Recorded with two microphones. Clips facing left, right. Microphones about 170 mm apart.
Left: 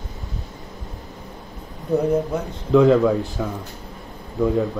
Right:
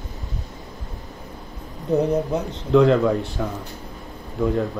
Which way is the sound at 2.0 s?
15° right (ahead or behind).